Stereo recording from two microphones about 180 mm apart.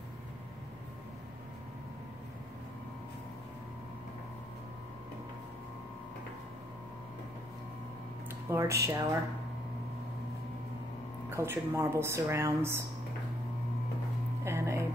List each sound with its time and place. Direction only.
8.5 s speech: 15° right (ahead or behind)
11.2 s speech: 10° right (ahead or behind)
14.4 s a sound: 15° right (ahead or behind)